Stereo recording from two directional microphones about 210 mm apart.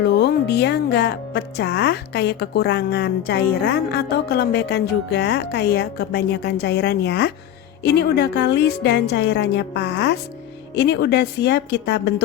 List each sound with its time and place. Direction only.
0.0 s a woman's voice: 50° left (ahead or behind)